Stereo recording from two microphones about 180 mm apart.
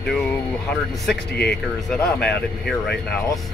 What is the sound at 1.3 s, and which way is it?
Speech, 60° left (ahead or behind).